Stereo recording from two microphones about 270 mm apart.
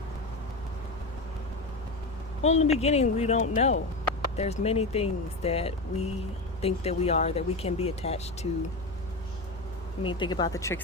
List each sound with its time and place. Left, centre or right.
2.4 s speech: left
10.0 s speech: centre